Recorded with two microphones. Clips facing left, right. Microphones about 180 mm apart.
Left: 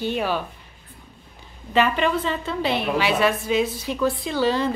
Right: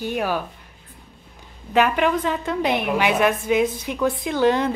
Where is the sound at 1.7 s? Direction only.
10° right (ahead or behind).